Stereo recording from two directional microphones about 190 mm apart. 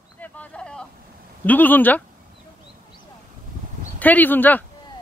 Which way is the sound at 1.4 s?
10° left (ahead or behind).